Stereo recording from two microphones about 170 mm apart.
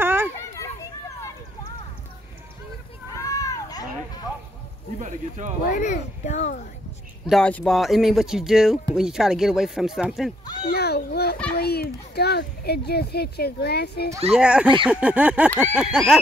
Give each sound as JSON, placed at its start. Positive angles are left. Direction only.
{"t": 0.0, "sound": "children playing", "side_deg": -15}
{"t": 0.4, "sound": "children playing", "side_deg": 15}
{"t": 3.2, "sound": "a sound", "side_deg": 20}
{"t": 5.6, "sound": "speech", "side_deg": 50}
{"t": 7.2, "sound": "speech", "side_deg": 5}
{"t": 10.6, "sound": "a sound", "side_deg": 70}
{"t": 11.5, "sound": "speech", "side_deg": 70}
{"t": 14.3, "sound": "speech", "side_deg": -5}
{"t": 14.9, "sound": "a sound", "side_deg": -5}
{"t": 15.6, "sound": "speech", "side_deg": -5}